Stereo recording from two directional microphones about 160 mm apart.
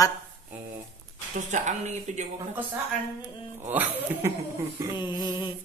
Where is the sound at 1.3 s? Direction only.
50° right (ahead or behind).